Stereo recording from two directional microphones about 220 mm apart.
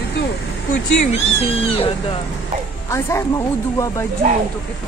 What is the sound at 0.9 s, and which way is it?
Speech, 30° left (ahead or behind).